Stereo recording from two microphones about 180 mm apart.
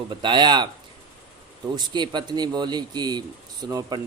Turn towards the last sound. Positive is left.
turn(degrees=-20)  # may be behind; listen again after turning